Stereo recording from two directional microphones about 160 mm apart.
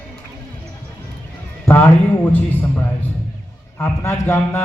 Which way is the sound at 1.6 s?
10° left (ahead or behind).